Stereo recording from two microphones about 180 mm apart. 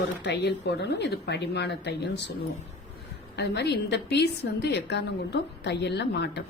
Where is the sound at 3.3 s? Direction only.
70° left (ahead or behind).